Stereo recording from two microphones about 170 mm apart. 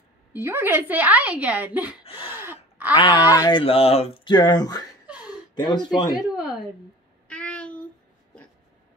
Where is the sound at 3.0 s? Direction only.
25° left (ahead or behind).